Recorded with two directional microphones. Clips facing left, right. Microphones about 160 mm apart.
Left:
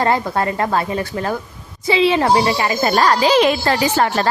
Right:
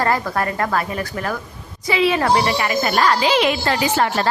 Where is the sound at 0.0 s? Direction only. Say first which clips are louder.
Left 2 dB; 25° left (ahead or behind).